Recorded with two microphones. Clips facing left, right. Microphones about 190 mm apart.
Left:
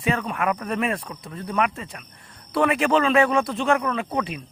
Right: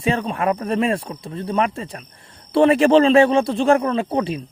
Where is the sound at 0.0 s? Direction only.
30° right (ahead or behind).